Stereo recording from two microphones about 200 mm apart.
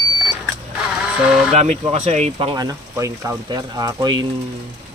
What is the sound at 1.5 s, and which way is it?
Speech, 30° right (ahead or behind).